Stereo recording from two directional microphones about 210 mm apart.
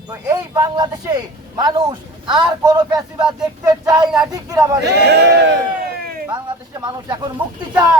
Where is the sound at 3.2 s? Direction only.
5° right (ahead or behind).